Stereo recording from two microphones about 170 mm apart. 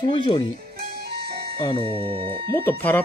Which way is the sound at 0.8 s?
70° right (ahead or behind).